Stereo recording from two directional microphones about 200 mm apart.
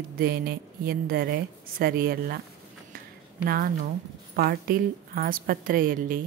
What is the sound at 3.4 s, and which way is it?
Speech, 50° right (ahead or behind).